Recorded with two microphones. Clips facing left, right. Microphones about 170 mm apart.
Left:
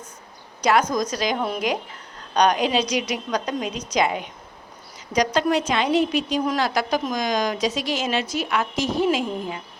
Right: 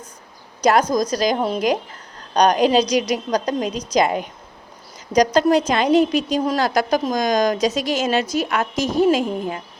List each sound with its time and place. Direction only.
0.6 s a woman's voice: 40° right (ahead or behind)